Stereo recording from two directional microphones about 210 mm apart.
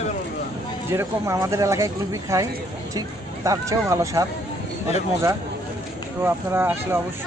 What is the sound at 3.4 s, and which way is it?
Speech, 15° right (ahead or behind).